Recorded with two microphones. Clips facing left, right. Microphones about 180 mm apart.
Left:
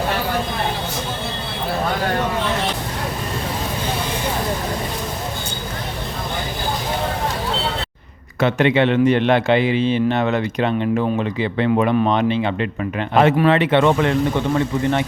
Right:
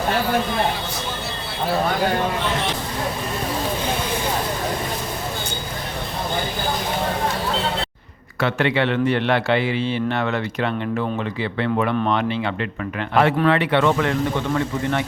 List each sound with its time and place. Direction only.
8.4 s a man's voice: 20° left (ahead or behind)